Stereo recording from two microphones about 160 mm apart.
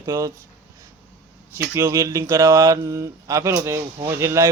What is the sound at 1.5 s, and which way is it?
A man's voice, 15° right (ahead or behind).